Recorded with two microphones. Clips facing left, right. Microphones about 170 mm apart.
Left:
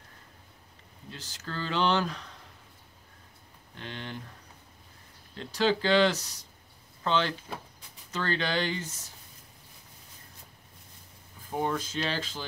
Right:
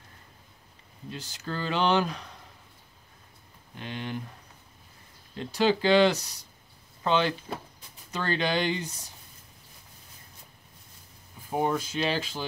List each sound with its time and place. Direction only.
1.1 s speech: 15° right (ahead or behind)
3.7 s speech: 15° right (ahead or behind)
5.3 s speech: 15° right (ahead or behind)
11.5 s speech: 10° right (ahead or behind)